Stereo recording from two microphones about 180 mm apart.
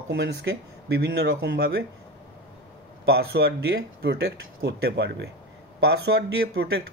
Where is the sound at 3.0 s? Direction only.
65° right (ahead or behind).